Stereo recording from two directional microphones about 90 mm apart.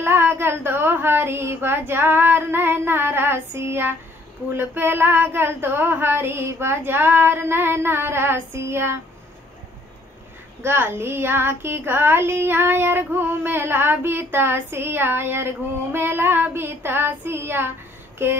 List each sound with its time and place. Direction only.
0.0 s child singing: 25° right (ahead or behind)
10.6 s child singing: 25° right (ahead or behind)